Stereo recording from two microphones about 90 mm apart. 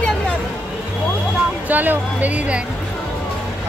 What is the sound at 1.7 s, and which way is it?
Speech, 20° right (ahead or behind).